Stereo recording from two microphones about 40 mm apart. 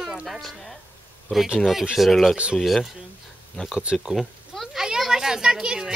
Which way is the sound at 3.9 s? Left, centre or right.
Centre.